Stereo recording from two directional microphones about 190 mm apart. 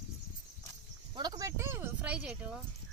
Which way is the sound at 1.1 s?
20° right (ahead or behind).